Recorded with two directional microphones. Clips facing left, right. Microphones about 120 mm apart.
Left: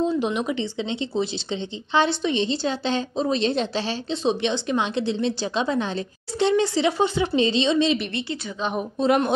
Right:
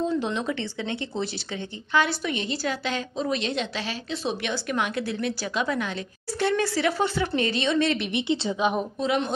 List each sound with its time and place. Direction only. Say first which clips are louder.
0.0 s speech: left 3 dB; 20° left (ahead or behind)
8.1 s speech: right 4 dB; 20° right (ahead or behind)
9.0 s speech: left 6 dB; 50° left (ahead or behind)